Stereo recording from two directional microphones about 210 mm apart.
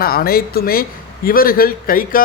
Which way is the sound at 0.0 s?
45° left (ahead or behind).